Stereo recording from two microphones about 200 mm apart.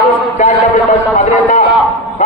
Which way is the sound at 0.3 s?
35° left (ahead or behind).